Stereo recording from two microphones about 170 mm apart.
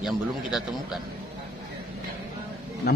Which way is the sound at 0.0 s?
Centre (ahead or behind).